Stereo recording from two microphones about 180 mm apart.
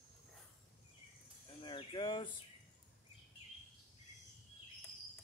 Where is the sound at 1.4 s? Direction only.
25° left (ahead or behind).